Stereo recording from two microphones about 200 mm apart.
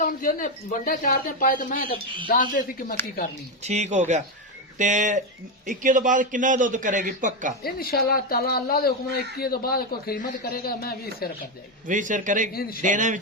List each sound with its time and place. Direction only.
0.0 s speech: 40° left (ahead or behind)
3.6 s a man's voice: 35° right (ahead or behind)
7.6 s speech: 50° left (ahead or behind)
11.9 s a man's voice: 40° right (ahead or behind)